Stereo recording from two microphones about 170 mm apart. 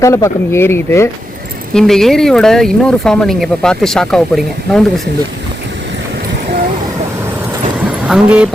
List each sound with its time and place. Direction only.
0.0 s speech: 20° left (ahead or behind)
1.7 s speech: centre (ahead or behind)
8.0 s speech: 5° right (ahead or behind)